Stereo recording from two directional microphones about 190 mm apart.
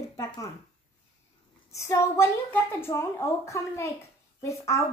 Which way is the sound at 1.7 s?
15° left (ahead or behind).